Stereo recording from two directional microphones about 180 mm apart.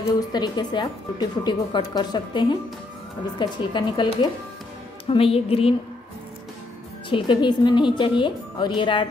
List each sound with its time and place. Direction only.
0.3 s speech: 25° left (ahead or behind)
5.0 s music: 30° left (ahead or behind)
7.1 s speech: 25° left (ahead or behind)